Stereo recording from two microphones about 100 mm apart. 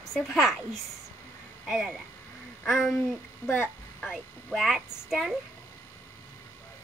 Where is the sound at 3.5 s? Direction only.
20° left (ahead or behind).